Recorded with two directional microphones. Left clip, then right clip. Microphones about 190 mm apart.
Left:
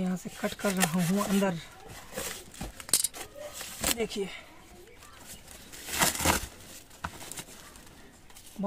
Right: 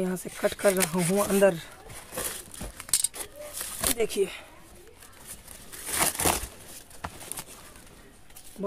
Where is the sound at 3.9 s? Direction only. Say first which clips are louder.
Right 6 dB; 65° right (ahead or behind).